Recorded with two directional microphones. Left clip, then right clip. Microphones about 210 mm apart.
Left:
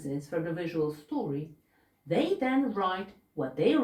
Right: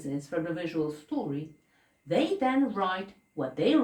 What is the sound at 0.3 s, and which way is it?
Speech, 20° right (ahead or behind).